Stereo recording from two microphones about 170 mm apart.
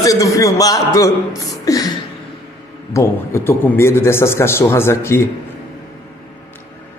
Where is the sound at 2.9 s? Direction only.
15° left (ahead or behind).